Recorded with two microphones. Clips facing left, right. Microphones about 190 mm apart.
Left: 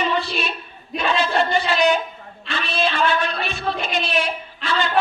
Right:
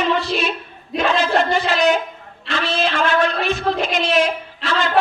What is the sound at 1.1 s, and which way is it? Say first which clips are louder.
A man's voice: right 1 dB; 90° right.